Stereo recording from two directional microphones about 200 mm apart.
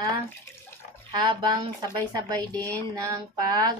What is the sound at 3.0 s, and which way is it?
Speech, 20° right (ahead or behind).